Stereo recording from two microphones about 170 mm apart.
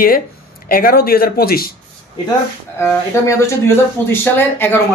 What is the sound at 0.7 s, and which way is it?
Speech, 60° left (ahead or behind).